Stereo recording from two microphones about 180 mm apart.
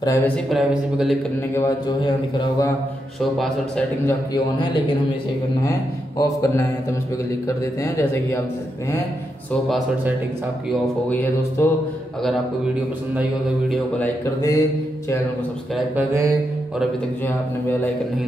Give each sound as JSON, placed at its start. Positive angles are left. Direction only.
{"t": 0.0, "sound": "speech", "side_deg": 15}
{"t": 0.5, "sound": "speech", "side_deg": 0}
{"t": 2.0, "sound": "a man's voice", "side_deg": 25}
{"t": 3.2, "sound": "speech", "side_deg": 0}
{"t": 6.2, "sound": "speech", "side_deg": 15}
{"t": 11.1, "sound": "speech", "side_deg": 10}
{"t": 13.7, "sound": "speech", "side_deg": 10}
{"t": 15.7, "sound": "speech", "side_deg": -5}